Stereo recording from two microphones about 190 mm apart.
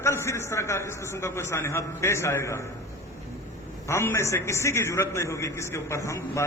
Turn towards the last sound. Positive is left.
turn(degrees=15)  # may be behind; listen again after turning